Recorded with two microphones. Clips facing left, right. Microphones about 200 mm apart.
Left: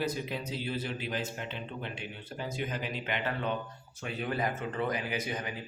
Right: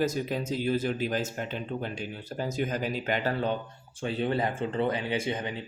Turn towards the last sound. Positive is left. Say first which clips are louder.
# right 5 dB
turn(degrees=-25)  # may be behind; listen again after turning